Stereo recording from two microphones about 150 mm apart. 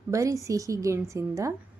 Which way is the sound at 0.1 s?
20° right (ahead or behind).